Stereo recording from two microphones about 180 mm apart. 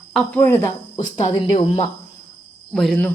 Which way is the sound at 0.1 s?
5° left (ahead or behind).